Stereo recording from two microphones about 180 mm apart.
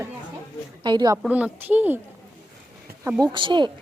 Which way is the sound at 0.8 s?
25° right (ahead or behind).